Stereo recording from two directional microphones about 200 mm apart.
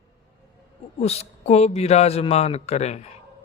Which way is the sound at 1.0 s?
30° left (ahead or behind).